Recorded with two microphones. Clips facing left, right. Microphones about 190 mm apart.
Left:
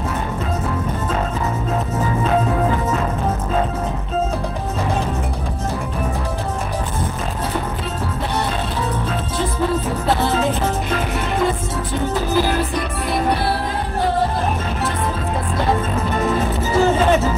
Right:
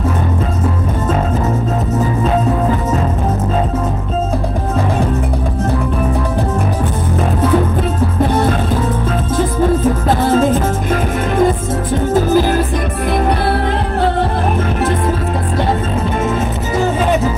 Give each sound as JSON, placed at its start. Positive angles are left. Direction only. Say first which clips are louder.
{"t": 10.0, "sound": "music", "louder": "right 4 dB", "side_deg": -50}
{"t": 12.1, "sound": "music", "louder": "right 7 dB", "side_deg": -45}